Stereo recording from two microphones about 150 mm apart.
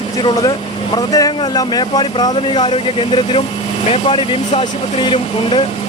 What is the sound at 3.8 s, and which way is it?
Speech, 45° left (ahead or behind).